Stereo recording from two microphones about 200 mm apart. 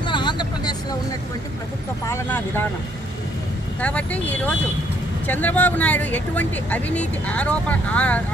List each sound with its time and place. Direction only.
0.0 s vehicle: 25° left (ahead or behind)
2.0 s speech: 10° left (ahead or behind)
3.8 s speech: 5° left (ahead or behind)